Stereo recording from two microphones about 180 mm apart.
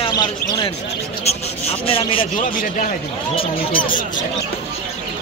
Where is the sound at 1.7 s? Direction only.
30° left (ahead or behind).